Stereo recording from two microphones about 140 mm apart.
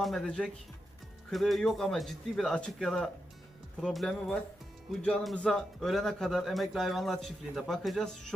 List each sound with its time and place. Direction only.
0.0 s speech: centre (ahead or behind)